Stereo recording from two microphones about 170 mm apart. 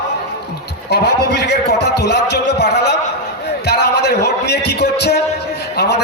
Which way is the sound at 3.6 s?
75° left (ahead or behind).